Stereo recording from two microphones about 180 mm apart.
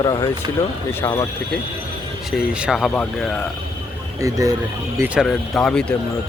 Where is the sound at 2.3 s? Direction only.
5° right (ahead or behind).